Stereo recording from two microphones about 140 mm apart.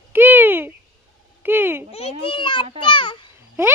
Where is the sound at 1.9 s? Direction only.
45° left (ahead or behind).